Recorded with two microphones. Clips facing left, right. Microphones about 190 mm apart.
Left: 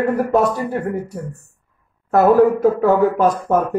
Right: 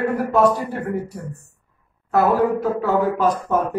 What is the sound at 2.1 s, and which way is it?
A man's voice, 45° left (ahead or behind).